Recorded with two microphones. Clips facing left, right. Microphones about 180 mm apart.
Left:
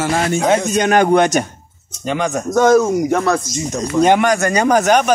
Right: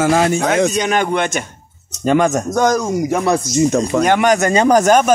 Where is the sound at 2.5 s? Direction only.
5° left (ahead or behind).